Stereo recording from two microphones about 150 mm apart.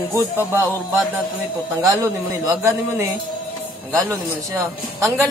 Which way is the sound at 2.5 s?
15° right (ahead or behind).